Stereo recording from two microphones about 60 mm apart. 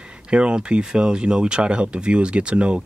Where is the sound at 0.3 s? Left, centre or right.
Centre.